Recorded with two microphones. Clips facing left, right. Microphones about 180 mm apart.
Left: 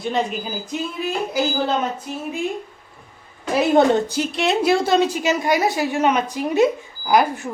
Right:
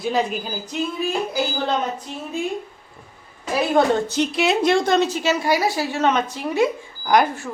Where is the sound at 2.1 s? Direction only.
5° left (ahead or behind).